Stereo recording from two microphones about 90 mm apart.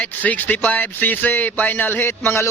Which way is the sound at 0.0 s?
15° left (ahead or behind).